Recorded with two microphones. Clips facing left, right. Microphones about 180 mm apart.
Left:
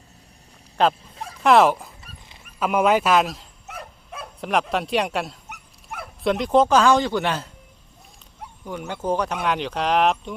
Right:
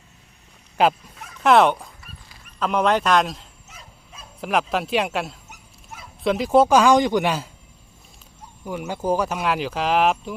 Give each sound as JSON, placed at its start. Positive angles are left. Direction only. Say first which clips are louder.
{"t": 0.8, "sound": "speech", "louder": "right 1 dB", "side_deg": -10}
{"t": 1.1, "sound": "a sound", "louder": "left 6 dB", "side_deg": 30}
{"t": 1.4, "sound": "a man's voice", "louder": "even", "side_deg": 0}
{"t": 3.7, "sound": "dog", "louder": "left 12 dB", "side_deg": 60}
{"t": 4.4, "sound": "speech", "louder": "even", "side_deg": 0}
{"t": 5.5, "sound": "dog", "louder": "left 5 dB", "side_deg": 60}
{"t": 6.2, "sound": "speech", "louder": "right 1 dB", "side_deg": -5}
{"t": 8.6, "sound": "speech", "louder": "right 2 dB", "side_deg": -10}